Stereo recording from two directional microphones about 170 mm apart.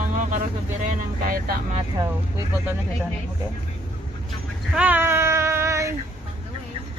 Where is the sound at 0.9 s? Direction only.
55° right (ahead or behind).